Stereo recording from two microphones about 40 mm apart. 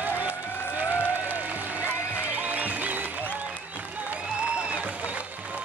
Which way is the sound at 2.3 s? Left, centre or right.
Right.